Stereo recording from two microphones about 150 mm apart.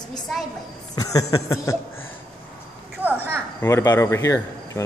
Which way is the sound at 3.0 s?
10° right (ahead or behind).